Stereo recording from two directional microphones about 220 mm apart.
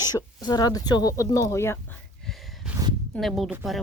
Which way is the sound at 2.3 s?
Centre (ahead or behind).